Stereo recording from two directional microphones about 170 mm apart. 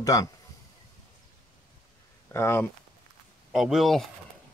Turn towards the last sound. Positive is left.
turn(degrees=0)  # may be behind; listen again after turning